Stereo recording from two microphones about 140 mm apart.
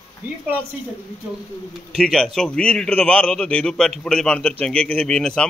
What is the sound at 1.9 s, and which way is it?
A man's voice, 5° left (ahead or behind).